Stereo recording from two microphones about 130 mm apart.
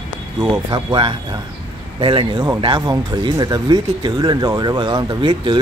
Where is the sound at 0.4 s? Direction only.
40° right (ahead or behind).